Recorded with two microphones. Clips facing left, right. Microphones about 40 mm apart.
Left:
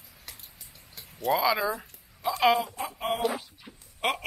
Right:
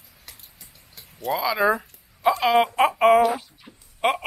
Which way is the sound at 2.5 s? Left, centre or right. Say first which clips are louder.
Right 13 dB; right.